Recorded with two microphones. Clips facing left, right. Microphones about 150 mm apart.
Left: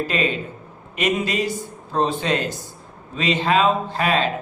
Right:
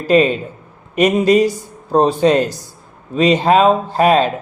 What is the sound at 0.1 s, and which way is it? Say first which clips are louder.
A man's voice: right 10 dB; 40° right (ahead or behind).